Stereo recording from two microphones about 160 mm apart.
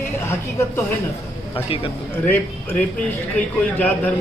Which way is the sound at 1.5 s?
35° left (ahead or behind).